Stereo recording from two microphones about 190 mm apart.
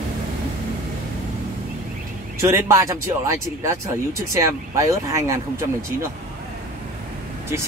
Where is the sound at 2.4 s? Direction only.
15° right (ahead or behind).